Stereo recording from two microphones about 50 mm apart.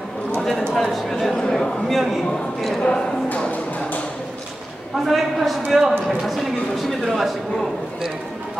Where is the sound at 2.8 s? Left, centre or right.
Left.